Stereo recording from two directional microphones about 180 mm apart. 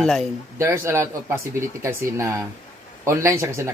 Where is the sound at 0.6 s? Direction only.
15° right (ahead or behind).